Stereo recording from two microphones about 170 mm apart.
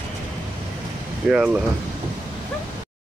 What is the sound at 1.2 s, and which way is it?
Speech, 5° right (ahead or behind).